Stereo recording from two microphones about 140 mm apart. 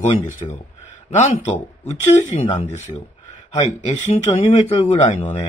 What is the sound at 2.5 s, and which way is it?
Speech, 55° left (ahead or behind).